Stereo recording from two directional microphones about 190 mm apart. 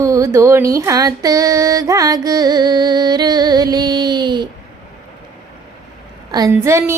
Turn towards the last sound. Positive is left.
turn(degrees=-15)  # may be behind; listen again after turning